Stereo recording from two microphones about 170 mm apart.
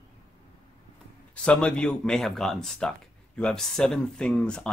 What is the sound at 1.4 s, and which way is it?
Speech, 5° left (ahead or behind).